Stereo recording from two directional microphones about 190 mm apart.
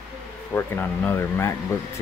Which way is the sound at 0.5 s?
10° left (ahead or behind).